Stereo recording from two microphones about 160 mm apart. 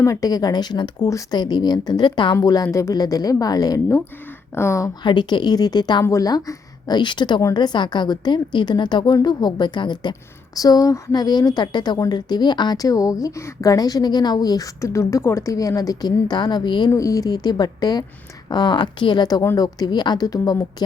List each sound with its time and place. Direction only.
0.0 s a woman's voice: 20° left (ahead or behind)
5.0 s a woman's voice: 30° left (ahead or behind)